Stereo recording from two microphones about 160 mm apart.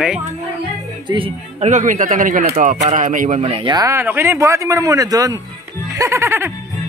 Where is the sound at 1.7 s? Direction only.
50° right (ahead or behind).